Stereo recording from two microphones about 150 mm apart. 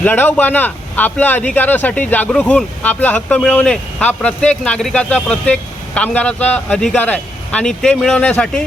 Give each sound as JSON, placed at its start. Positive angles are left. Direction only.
{"t": 0.0, "sound": "speech", "side_deg": 10}